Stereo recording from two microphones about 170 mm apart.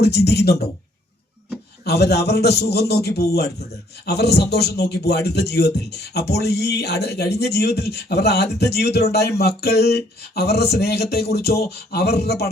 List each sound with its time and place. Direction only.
0.0 s a man's voice: 75° left (ahead or behind)
1.8 s a man's voice: 75° left (ahead or behind)